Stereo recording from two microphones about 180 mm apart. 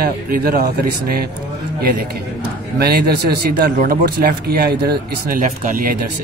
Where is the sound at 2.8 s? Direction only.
60° right (ahead or behind).